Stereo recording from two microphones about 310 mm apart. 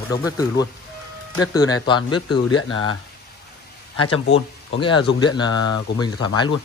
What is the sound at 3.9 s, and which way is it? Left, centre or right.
Speech, left.